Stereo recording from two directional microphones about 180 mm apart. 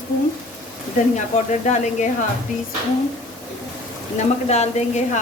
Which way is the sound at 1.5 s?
40° left (ahead or behind).